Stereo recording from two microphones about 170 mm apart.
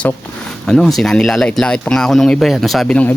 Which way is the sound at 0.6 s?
5° left (ahead or behind).